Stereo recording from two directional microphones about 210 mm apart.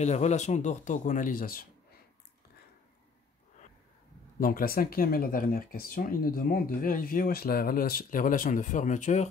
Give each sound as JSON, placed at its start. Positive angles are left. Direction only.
{"t": 0.0, "sound": "speech", "side_deg": 35}
{"t": 4.4, "sound": "speech", "side_deg": 45}